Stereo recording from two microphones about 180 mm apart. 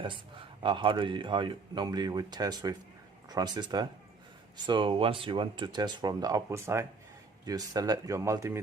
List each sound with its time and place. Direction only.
0.0 s speech: 25° right (ahead or behind)